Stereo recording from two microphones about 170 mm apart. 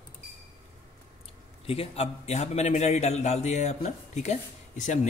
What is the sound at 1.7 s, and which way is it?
A man's voice, 35° left (ahead or behind).